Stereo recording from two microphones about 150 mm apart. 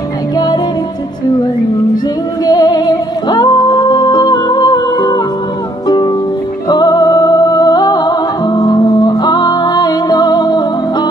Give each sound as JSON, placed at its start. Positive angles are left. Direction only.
{"t": 2.4, "sound": "music", "side_deg": 25}